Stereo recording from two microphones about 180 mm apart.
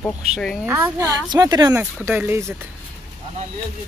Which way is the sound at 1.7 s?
10° right (ahead or behind).